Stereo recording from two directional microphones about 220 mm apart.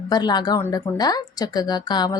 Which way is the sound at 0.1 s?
20° left (ahead or behind).